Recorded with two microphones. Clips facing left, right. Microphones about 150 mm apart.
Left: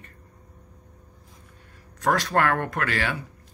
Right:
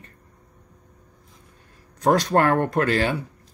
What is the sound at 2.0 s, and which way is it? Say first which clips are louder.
Speech: right 4 dB; 35° right (ahead or behind).